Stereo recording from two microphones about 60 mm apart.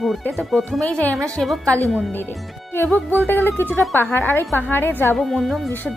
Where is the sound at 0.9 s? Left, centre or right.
Left.